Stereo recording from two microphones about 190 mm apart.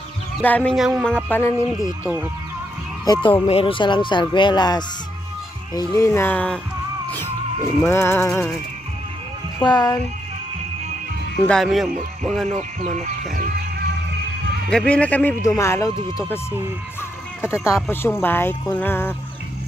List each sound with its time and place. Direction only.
0.4 s speech: 10° left (ahead or behind)
3.1 s speech: 25° left (ahead or behind); by 6.6 s 5° left (ahead or behind)
7.8 s speech: 15° left (ahead or behind)
9.6 s speech: 20° left (ahead or behind)
11.4 s speech: centre (ahead or behind)
12.4 s speech: 40° right (ahead or behind)
14.7 s speech: 5° left (ahead or behind)
17.4 s speech: 15° left (ahead or behind)